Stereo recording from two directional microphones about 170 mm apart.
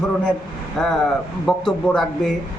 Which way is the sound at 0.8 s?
5° left (ahead or behind).